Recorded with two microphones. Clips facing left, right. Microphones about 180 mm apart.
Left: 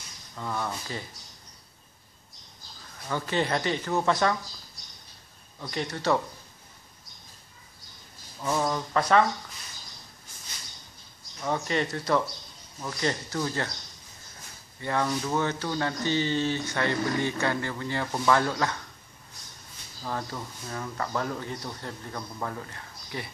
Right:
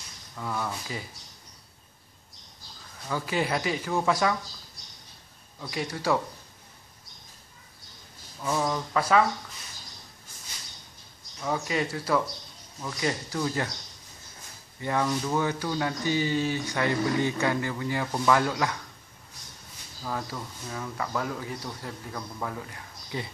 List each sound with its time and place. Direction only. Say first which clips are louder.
0.4 s speech: even; 5° right (ahead or behind)
3.1 s speech: left 1 dB; 5° right (ahead or behind)
5.6 s speech: even; 5° right (ahead or behind)
8.4 s speech: even; 5° left (ahead or behind)
11.4 s speech: left 1 dB; 5° right (ahead or behind)
14.8 s speech: right 1 dB; 15° right (ahead or behind)
18.0 s speech: left 1 dB; centre (ahead or behind)
18.3 s speech: even; 10° right (ahead or behind)
20.0 s speech: even; centre (ahead or behind)
23.1 s speech: right 2 dB; 20° right (ahead or behind)